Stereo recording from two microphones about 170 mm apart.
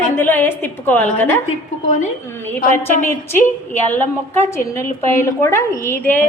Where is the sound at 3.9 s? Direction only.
10° left (ahead or behind).